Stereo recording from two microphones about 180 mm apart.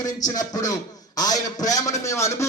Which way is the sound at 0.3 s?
20° left (ahead or behind).